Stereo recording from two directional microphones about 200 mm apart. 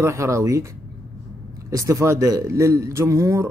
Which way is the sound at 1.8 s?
15° right (ahead or behind).